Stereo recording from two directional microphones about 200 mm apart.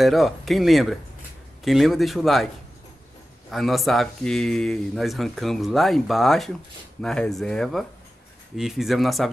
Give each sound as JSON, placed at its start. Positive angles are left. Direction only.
{"t": 0.0, "sound": "speech", "side_deg": 0}
{"t": 3.4, "sound": "speech", "side_deg": 0}